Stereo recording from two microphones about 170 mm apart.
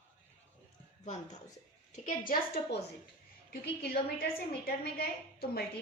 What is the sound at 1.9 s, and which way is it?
A woman's voice, 50° left (ahead or behind).